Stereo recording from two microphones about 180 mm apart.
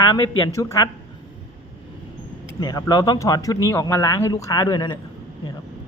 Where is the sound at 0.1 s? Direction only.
20° left (ahead or behind).